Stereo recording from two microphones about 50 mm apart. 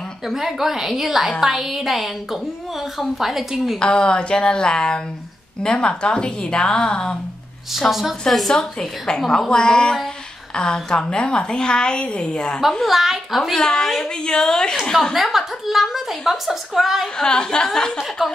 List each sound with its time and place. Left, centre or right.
0.3 s a woman's voice: centre
3.2 s a woman's voice: centre
3.8 s a woman's voice: centre
8.3 s a woman's voice: centre
8.5 s a woman's voice: centre
12.8 s a woman's voice: centre
15.1 s a woman's voice: centre
17.2 s a woman's voice: centre
18.2 s a woman's voice: centre